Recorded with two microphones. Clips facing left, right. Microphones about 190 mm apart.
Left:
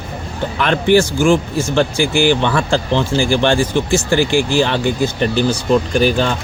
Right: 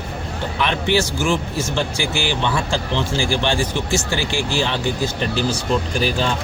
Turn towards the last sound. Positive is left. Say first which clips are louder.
# left 6 dB
turn(degrees=60)  # may be behind; listen again after turning